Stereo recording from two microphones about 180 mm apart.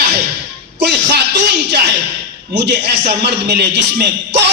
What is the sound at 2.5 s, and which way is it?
A man's voice, 70° right (ahead or behind).